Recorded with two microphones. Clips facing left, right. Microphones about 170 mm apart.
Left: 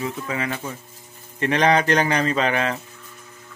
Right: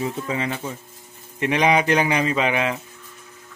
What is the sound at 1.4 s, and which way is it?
Speech, 10° right (ahead or behind).